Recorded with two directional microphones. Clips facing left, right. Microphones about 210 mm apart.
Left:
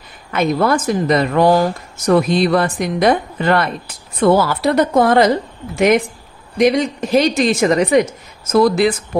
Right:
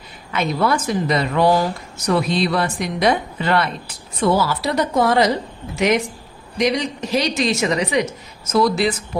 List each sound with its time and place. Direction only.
0.3 s a man's voice: 50° left (ahead or behind)